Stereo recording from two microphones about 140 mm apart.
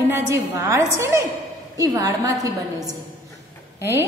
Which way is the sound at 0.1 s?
20° right (ahead or behind).